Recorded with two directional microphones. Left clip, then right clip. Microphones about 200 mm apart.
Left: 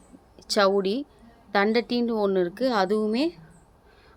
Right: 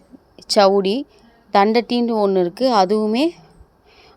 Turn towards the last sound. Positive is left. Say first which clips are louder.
# right 7 dB
turn(degrees=-40)  # may be behind; listen again after turning